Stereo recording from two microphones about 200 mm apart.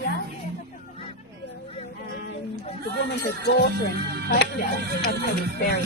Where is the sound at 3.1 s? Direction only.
55° left (ahead or behind).